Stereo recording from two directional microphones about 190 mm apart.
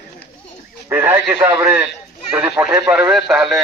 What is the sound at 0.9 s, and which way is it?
A man's voice, 10° right (ahead or behind).